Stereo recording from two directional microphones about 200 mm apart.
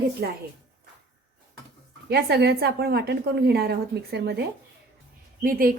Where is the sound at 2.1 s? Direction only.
55° right (ahead or behind).